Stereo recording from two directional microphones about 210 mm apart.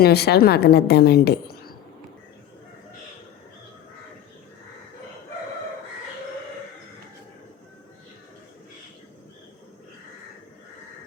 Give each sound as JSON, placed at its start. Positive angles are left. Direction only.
{"t": 0.0, "sound": "a woman's voice", "side_deg": 50}